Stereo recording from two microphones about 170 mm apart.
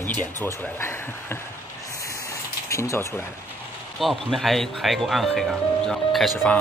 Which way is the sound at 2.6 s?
15° left (ahead or behind).